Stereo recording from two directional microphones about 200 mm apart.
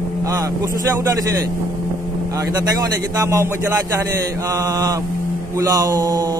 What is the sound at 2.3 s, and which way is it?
A man's voice, 20° right (ahead or behind).